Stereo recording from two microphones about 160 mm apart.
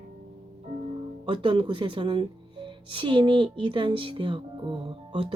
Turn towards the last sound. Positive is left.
turn(degrees=-30)  # may be behind; listen again after turning